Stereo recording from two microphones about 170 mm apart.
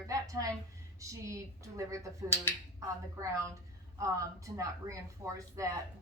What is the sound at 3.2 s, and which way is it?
A woman's voice, 20° right (ahead or behind).